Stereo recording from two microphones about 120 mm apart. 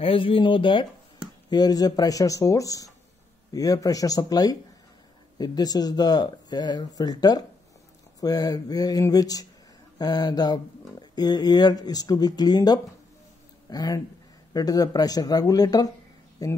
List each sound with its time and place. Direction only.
0.0 s speech: 50° left (ahead or behind)
1.5 s speech: 30° left (ahead or behind)